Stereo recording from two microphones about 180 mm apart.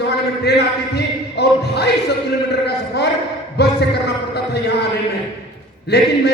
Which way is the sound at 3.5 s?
70° left (ahead or behind).